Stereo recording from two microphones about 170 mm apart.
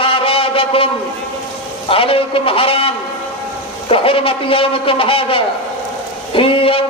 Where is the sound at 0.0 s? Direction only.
35° left (ahead or behind).